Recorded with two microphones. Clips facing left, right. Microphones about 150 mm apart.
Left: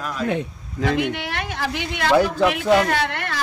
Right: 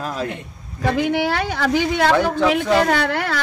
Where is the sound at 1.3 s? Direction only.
80° right.